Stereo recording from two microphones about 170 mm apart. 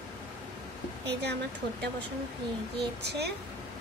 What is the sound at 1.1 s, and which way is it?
Speech, 80° right.